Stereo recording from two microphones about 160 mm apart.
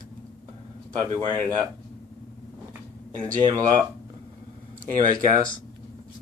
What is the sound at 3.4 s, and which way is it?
Speech, 25° right (ahead or behind).